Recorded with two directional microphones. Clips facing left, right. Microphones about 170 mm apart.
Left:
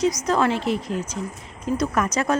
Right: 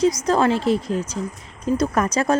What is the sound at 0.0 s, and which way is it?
A woman's voice, 30° right (ahead or behind).